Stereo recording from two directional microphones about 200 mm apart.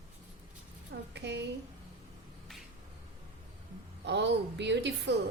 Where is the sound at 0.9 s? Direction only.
60° right (ahead or behind).